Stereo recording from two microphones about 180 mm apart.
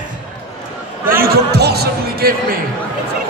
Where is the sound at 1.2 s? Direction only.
65° right (ahead or behind).